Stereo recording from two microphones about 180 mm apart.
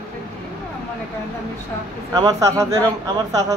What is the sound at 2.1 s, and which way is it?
Speech, 20° right (ahead or behind).